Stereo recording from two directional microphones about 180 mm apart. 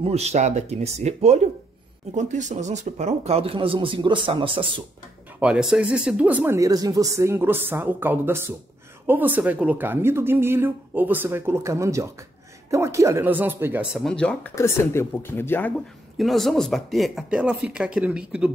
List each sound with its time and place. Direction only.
0.0 s speech: 35° right (ahead or behind)
5.4 s speech: 5° right (ahead or behind)
13.9 s speech: 5° left (ahead or behind)
16.2 s speech: centre (ahead or behind)